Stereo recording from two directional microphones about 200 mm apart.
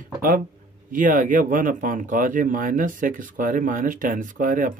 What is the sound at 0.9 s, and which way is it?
Speech, 40° right (ahead or behind).